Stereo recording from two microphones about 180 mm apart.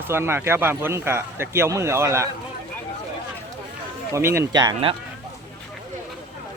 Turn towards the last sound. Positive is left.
turn(degrees=-25)  # may be behind; listen again after turning